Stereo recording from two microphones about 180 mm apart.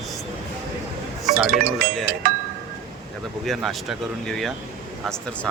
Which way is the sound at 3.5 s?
Centre (ahead or behind).